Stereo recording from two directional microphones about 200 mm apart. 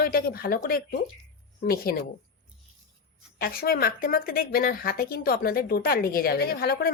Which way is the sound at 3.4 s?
45° left (ahead or behind).